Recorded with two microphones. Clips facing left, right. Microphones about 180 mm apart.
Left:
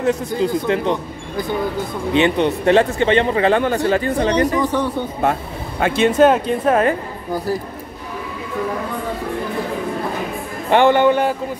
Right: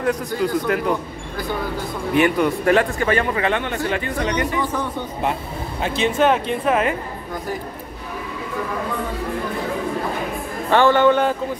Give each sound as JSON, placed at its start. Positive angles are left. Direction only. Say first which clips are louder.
{"t": 0.0, "sound": "speech", "louder": "left 3 dB", "side_deg": 25}
{"t": 5.8, "sound": "speech", "louder": "left 6 dB", "side_deg": 55}
{"t": 6.4, "sound": "a woman's voice", "louder": "left 4 dB", "side_deg": 40}
{"t": 10.7, "sound": "a man's voice", "louder": "left 2 dB", "side_deg": 15}